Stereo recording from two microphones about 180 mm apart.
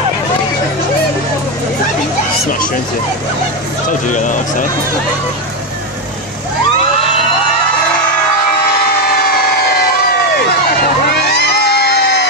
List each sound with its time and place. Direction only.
4.1 s speech: 45° left (ahead or behind)
9.0 s a sound: 60° left (ahead or behind)
11.1 s music: 65° left (ahead or behind)